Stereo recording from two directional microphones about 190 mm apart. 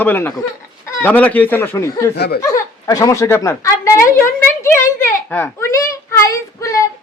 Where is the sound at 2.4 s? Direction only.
15° left (ahead or behind).